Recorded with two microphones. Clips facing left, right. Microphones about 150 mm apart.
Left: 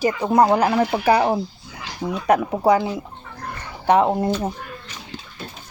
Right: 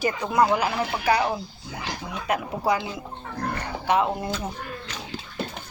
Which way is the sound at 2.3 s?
30° left (ahead or behind).